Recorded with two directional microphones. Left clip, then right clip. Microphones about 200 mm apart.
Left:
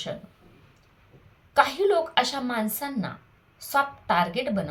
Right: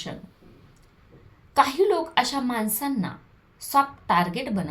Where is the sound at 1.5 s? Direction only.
5° right (ahead or behind).